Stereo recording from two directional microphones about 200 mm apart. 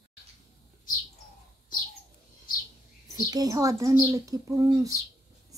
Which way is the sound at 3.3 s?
15° right (ahead or behind).